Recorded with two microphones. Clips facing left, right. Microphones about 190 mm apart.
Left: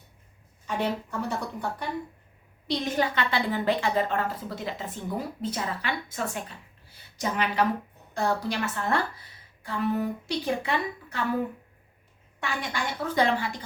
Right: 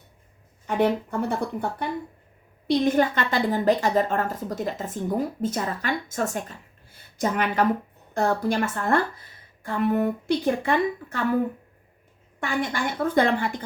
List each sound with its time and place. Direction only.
0.7 s speech: 55° right (ahead or behind)
2.6 s a woman's voice: 50° right (ahead or behind)
12.4 s a woman's voice: 50° right (ahead or behind)